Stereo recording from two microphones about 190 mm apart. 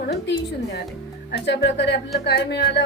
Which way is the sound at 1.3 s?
65° left (ahead or behind).